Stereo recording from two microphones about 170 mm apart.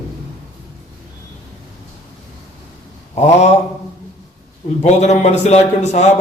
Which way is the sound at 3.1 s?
40° left (ahead or behind).